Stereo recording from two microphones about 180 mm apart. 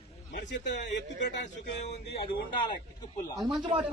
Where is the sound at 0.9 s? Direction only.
75° left (ahead or behind).